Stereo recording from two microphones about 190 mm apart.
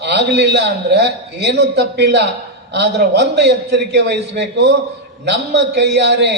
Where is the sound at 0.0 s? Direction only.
60° right (ahead or behind).